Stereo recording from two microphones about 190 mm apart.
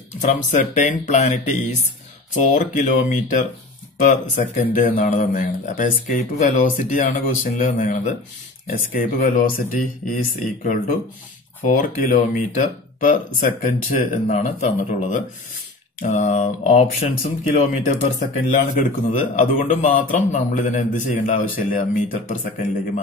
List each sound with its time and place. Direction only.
0.2 s speech: 40° left (ahead or behind)